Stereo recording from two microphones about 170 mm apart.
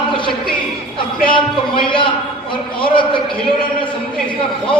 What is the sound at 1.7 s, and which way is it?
A man's voice, 30° left (ahead or behind).